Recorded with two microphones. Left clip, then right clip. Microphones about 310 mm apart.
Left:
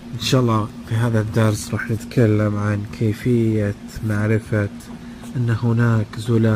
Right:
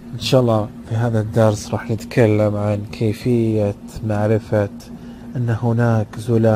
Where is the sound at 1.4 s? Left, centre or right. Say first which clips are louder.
Right 10 dB; right.